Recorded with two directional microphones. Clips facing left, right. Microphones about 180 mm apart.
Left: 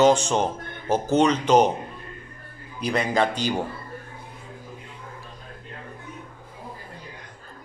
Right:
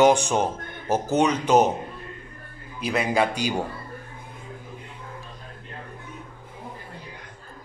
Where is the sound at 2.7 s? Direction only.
5° right (ahead or behind).